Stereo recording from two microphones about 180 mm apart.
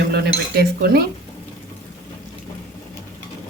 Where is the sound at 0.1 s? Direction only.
65° right (ahead or behind).